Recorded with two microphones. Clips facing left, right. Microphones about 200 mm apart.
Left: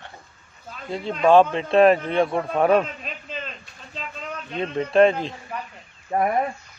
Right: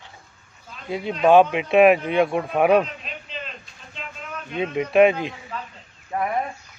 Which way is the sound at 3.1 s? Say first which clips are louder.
Left 1 dB; 45° left (ahead or behind).